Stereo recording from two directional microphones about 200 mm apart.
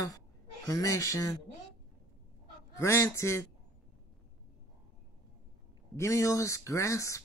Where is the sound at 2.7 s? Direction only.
15° left (ahead or behind).